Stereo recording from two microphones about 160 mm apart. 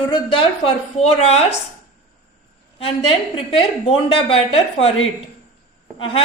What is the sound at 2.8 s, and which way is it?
Speech, 35° left (ahead or behind).